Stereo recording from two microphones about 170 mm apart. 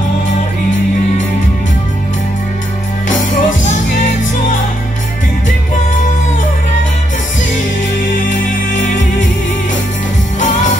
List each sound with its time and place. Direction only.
3.1 s music: 50° left (ahead or behind)
8.3 s music: 45° left (ahead or behind)
10.4 s music: 45° left (ahead or behind)